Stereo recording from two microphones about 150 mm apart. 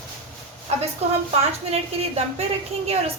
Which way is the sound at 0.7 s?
45° right (ahead or behind).